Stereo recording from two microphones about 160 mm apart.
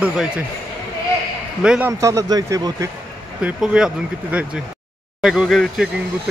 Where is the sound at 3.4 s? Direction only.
5° right (ahead or behind).